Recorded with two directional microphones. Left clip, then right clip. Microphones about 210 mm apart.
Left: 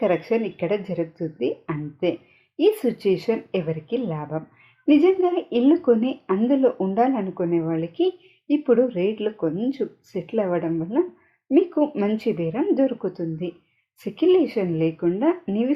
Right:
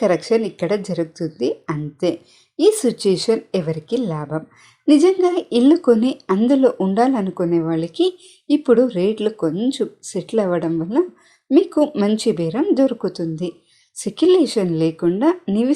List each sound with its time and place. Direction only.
0.0 s speech: 40° right (ahead or behind)